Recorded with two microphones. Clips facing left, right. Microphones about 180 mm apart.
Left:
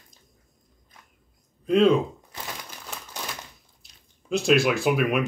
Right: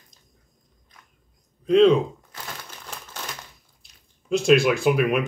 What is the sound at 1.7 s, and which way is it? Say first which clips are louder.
Speech: right 3 dB; 5° left (ahead or behind).